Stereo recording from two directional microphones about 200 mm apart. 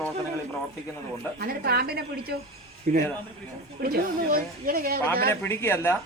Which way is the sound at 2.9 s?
40° right (ahead or behind).